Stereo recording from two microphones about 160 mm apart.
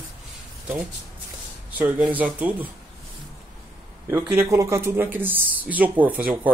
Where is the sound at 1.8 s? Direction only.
10° right (ahead or behind).